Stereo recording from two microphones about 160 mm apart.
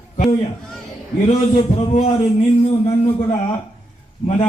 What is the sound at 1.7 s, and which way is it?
Speech, 40° left (ahead or behind).